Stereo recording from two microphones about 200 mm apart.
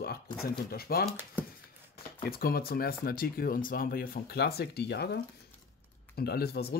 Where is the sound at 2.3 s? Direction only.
50° left (ahead or behind).